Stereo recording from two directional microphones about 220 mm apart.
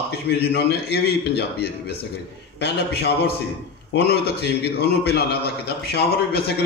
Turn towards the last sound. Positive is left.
turn(degrees=50)  # may be behind; listen again after turning